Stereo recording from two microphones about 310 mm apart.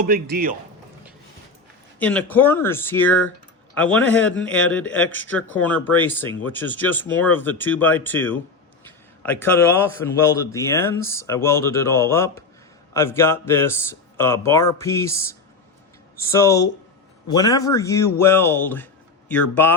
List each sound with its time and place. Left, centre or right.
0.0 s speech: right
2.0 s speech: centre